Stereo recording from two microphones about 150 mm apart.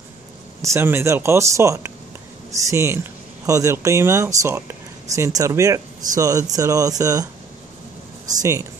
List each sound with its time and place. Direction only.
0.6 s speech: 15° right (ahead or behind)
8.4 s speech: 20° right (ahead or behind)